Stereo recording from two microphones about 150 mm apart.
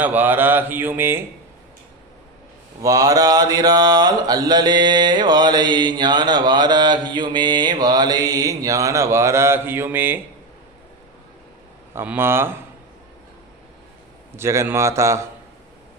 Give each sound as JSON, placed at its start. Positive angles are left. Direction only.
{"t": 0.0, "sound": "mantra", "side_deg": -10}
{"t": 2.8, "sound": "mantra", "side_deg": -25}
{"t": 11.9, "sound": "mantra", "side_deg": -15}
{"t": 14.3, "sound": "mantra", "side_deg": -20}